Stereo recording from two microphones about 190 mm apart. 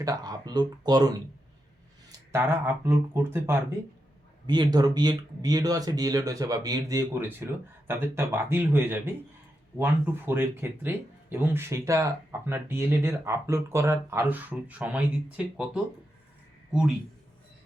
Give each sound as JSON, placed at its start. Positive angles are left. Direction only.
{"t": 0.0, "sound": "speech", "side_deg": -20}
{"t": 2.3, "sound": "speech", "side_deg": -10}
{"t": 4.4, "sound": "speech", "side_deg": -20}